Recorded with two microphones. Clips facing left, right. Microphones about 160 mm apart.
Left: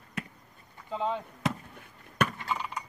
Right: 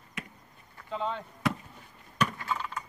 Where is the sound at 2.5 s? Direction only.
15° left (ahead or behind).